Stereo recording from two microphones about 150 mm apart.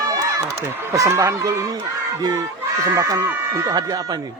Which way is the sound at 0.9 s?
20° right (ahead or behind).